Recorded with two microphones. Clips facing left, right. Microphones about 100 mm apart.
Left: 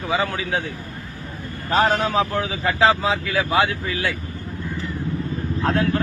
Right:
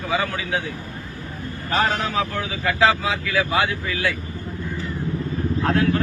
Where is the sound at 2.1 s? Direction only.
30° left (ahead or behind).